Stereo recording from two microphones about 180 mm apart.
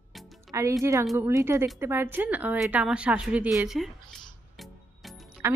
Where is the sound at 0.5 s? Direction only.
15° right (ahead or behind).